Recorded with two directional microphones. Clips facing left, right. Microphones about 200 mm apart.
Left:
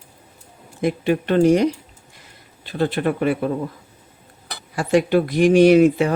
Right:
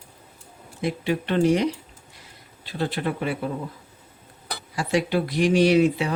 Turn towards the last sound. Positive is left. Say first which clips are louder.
# left 6 dB
turn(degrees=50)  # may be behind; listen again after turning